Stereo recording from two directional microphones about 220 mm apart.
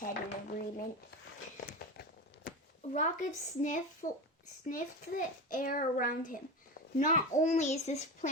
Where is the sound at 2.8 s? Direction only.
35° left (ahead or behind).